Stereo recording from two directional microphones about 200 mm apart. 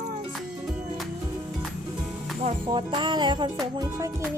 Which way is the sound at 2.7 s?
20° right (ahead or behind).